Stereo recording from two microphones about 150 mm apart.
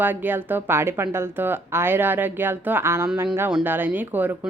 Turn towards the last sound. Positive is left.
turn(degrees=-10)  # may be behind; listen again after turning